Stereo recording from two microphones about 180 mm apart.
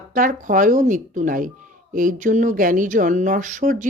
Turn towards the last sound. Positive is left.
turn(degrees=-45)  # may be behind; listen again after turning